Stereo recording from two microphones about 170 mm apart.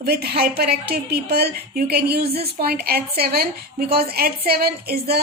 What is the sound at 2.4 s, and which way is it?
A woman's voice, 65° right (ahead or behind).